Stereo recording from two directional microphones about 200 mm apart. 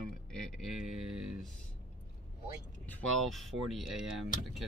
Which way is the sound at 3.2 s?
Centre (ahead or behind).